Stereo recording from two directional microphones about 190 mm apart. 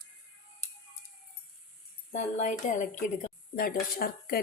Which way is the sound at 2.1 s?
40° left (ahead or behind).